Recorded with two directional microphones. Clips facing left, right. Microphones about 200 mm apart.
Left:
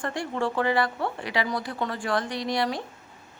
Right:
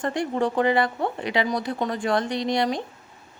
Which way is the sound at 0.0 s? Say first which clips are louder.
Right 4 dB; 20° right (ahead or behind).